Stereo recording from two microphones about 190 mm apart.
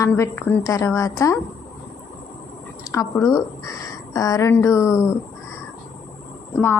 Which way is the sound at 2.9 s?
15° left (ahead or behind).